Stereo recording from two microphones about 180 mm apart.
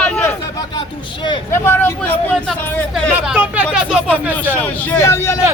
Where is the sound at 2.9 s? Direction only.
5° right (ahead or behind).